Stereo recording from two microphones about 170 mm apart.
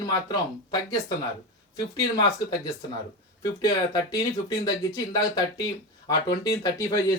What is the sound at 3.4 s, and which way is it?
Speech, 20° left (ahead or behind).